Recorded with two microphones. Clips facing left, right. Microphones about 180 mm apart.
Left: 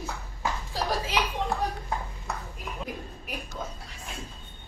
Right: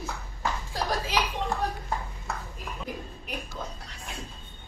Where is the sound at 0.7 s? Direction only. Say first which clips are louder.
Even; 5° left (ahead or behind).